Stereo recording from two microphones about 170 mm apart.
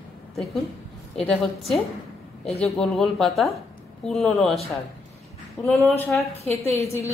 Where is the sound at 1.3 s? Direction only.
Centre (ahead or behind).